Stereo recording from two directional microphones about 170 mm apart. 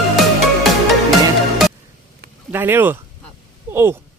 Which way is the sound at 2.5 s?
10° right (ahead or behind).